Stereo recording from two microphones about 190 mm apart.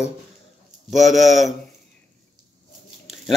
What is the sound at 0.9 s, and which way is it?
Speech, centre (ahead or behind).